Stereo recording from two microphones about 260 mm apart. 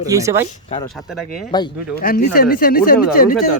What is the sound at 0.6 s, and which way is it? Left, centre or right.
Speech, centre.